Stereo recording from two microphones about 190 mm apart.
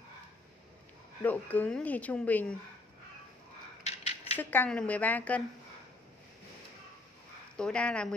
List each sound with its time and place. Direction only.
1.2 s speech: 10° left (ahead or behind)
3.8 s scissors: 35° left (ahead or behind)
4.4 s speech: 10° left (ahead or behind)
7.5 s speech: 5° left (ahead or behind)